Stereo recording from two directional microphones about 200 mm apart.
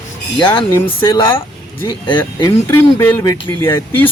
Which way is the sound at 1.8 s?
25° left (ahead or behind).